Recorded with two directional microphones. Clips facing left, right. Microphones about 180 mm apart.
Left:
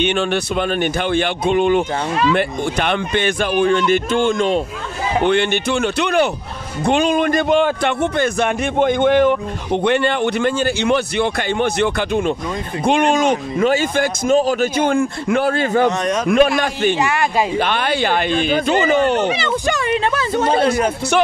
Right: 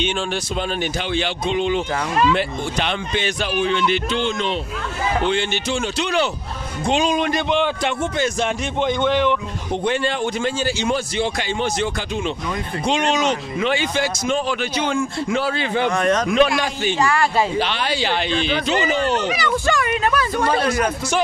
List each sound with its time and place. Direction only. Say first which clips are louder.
0.0 s a man's voice: left 5 dB; 65° left (ahead or behind); by 4.6 s 45° left (ahead or behind)
5.2 s a man's voice: left 5 dB; 60° left (ahead or behind)
9.7 s a man's voice: left 5 dB; 65° left (ahead or behind); by 15.9 s 45° left (ahead or behind)
15.9 s speech: right 1 dB; 20° left (ahead or behind)
16.3 s speech: left 3 dB; 55° left (ahead or behind)
17.0 s speech: left 1 dB; 20° left (ahead or behind)
17.6 s a man's voice: left 3 dB; 55° left (ahead or behind)
19.2 s speech: left 2 dB; 25° left (ahead or behind)